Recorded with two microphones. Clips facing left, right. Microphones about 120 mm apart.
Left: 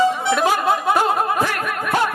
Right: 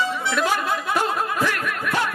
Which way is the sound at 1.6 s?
50° left (ahead or behind).